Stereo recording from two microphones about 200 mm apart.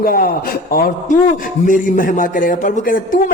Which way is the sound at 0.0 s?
50° left (ahead or behind).